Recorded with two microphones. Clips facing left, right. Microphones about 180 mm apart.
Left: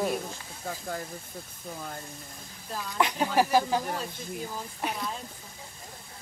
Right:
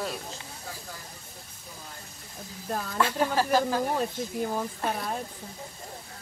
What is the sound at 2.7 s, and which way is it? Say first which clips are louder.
Speech: right 5 dB; 55° right (ahead or behind).